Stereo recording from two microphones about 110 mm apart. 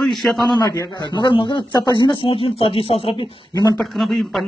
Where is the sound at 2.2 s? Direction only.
60° left (ahead or behind).